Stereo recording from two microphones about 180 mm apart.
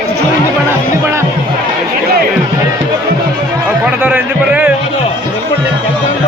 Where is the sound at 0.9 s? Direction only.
15° right (ahead or behind).